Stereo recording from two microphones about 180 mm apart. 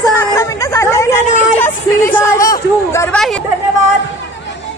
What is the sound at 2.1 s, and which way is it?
Chatter, 15° left (ahead or behind).